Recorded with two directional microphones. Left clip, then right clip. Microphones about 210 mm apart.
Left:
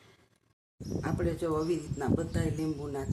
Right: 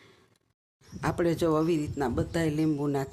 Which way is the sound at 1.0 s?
50° right (ahead or behind).